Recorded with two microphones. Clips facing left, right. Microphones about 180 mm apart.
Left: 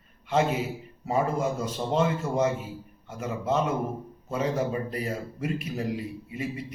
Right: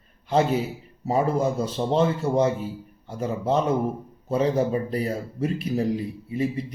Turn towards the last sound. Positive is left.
turn(degrees=-35)  # may be behind; listen again after turning